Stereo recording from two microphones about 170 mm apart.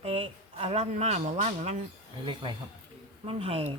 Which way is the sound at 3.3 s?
35° right (ahead or behind).